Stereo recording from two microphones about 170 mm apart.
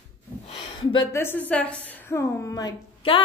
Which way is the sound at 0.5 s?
30° left (ahead or behind).